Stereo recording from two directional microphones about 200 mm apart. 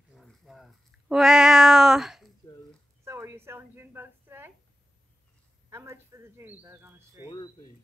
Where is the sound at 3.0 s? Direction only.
10° right (ahead or behind).